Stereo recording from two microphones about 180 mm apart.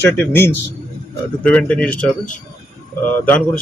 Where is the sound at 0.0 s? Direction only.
10° left (ahead or behind).